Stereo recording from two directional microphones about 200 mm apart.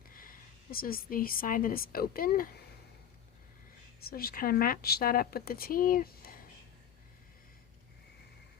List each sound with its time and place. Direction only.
0.1 s a woman's voice: 45° left (ahead or behind)
4.0 s speech: 50° left (ahead or behind)